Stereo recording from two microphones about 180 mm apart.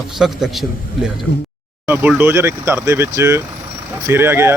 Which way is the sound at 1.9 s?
10° right (ahead or behind).